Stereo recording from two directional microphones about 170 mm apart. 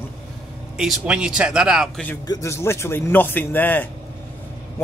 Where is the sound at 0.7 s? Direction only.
5° right (ahead or behind).